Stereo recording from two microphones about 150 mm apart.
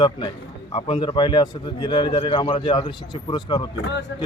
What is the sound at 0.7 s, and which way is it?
Speech, 40° left (ahead or behind).